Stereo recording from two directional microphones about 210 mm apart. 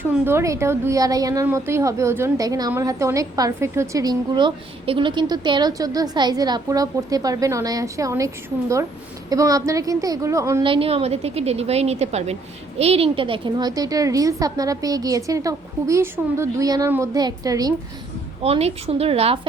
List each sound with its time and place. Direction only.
0.0 s a woman's voice: 10° right (ahead or behind)
9.3 s a woman's voice: 15° right (ahead or behind)
18.4 s a woman's voice: 30° right (ahead or behind)